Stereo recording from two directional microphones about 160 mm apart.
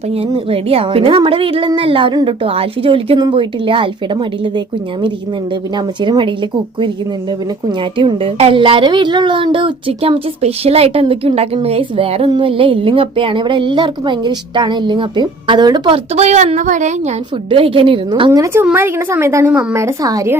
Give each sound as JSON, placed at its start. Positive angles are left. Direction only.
{"t": 0.2, "sound": "a woman's voice", "side_deg": -35}
{"t": 5.7, "sound": "a woman's voice", "side_deg": -30}
{"t": 7.9, "sound": "a woman's voice", "side_deg": -35}
{"t": 16.1, "sound": "speech", "side_deg": -45}
{"t": 17.5, "sound": "a woman's voice", "side_deg": -35}
{"t": 18.3, "sound": "a woman's voice", "side_deg": -15}